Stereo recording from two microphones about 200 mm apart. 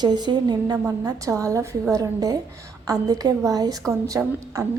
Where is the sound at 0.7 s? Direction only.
10° right (ahead or behind).